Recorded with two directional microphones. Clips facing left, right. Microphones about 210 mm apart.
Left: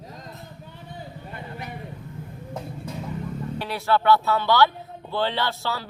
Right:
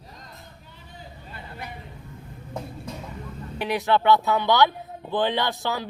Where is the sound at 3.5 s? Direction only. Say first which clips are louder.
Right 2 dB; 15° right (ahead or behind).